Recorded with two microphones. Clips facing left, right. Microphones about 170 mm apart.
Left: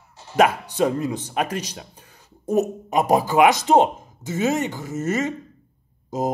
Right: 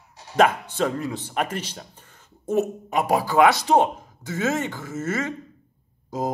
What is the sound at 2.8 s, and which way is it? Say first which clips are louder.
Speech: left 3 dB; 20° left (ahead or behind).